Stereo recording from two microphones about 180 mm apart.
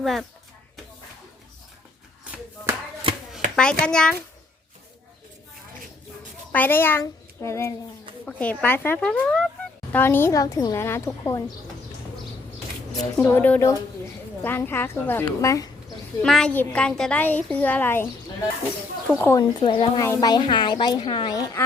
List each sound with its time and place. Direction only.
0.0 s a child's voice: centre (ahead or behind)
2.2 s a sound: 10° right (ahead or behind)
3.5 s a child's voice: 5° left (ahead or behind)
6.5 s a child's voice: 10° left (ahead or behind)
13.1 s a woman's voice: 10° left (ahead or behind)
16.2 s a woman's voice: 5° left (ahead or behind)
19.2 s a woman's voice: 20° left (ahead or behind)